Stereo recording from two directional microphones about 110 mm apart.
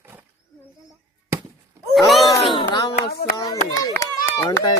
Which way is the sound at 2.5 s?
40° left (ahead or behind).